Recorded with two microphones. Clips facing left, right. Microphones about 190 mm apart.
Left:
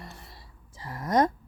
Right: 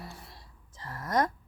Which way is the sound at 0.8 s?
15° left (ahead or behind).